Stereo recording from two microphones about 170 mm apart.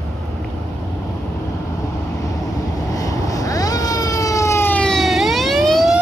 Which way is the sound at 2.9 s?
20° left (ahead or behind).